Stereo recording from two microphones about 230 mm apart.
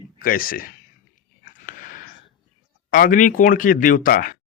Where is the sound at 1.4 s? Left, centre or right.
Left.